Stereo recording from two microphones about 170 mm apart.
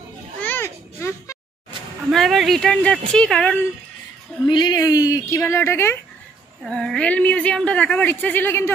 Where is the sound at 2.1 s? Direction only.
Centre (ahead or behind).